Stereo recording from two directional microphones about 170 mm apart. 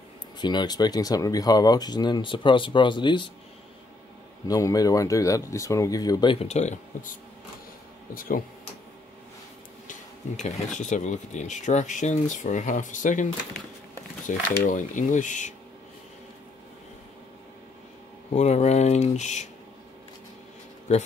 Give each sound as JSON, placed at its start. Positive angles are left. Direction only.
{"t": 0.4, "sound": "speech", "side_deg": 25}
{"t": 4.5, "sound": "speech", "side_deg": 20}
{"t": 8.1, "sound": "speech", "side_deg": 55}
{"t": 9.8, "sound": "speech", "side_deg": 45}
{"t": 18.3, "sound": "speech", "side_deg": 40}